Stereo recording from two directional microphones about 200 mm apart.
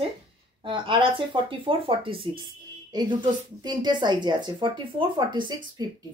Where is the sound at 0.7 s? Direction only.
25° right (ahead or behind).